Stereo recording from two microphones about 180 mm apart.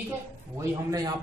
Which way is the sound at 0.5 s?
20° right (ahead or behind).